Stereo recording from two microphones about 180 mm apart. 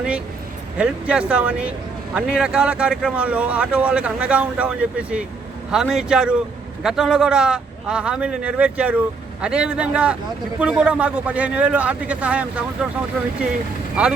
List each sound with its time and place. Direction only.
0.8 s speech: 5° right (ahead or behind)